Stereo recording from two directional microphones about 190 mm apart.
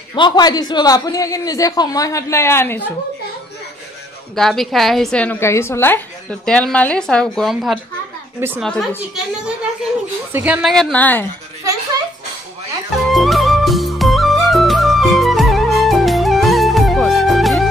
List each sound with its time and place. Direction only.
0.1 s a man's voice: 25° left (ahead or behind)
4.4 s a woman's voice: centre (ahead or behind)
13.1 s music: centre (ahead or behind)